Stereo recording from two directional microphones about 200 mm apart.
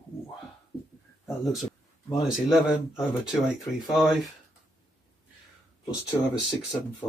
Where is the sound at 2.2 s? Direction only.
Centre (ahead or behind).